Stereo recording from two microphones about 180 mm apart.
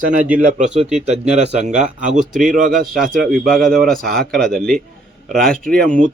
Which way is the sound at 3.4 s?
Centre (ahead or behind).